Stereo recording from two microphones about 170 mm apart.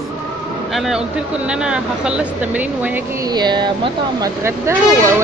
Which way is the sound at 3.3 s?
25° right (ahead or behind).